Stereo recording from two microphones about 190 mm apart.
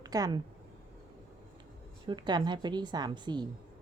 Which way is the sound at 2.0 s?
25° right (ahead or behind).